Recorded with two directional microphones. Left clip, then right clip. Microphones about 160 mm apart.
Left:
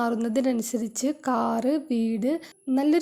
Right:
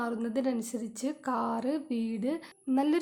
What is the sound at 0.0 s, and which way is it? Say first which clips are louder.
A woman's voice: left 7 dB; 35° left (ahead or behind).